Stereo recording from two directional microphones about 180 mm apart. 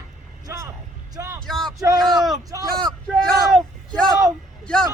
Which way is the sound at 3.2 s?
Centre (ahead or behind).